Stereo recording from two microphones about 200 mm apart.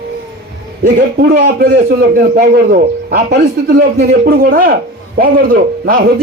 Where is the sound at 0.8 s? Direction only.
50° right (ahead or behind).